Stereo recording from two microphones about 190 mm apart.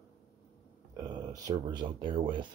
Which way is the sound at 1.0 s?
20° right (ahead or behind).